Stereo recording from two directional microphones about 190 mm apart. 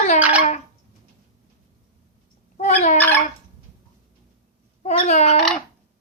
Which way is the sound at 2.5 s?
40° left (ahead or behind).